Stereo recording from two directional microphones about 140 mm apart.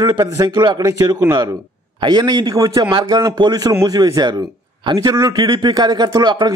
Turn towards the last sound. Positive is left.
turn(degrees=-30)  # may be behind; listen again after turning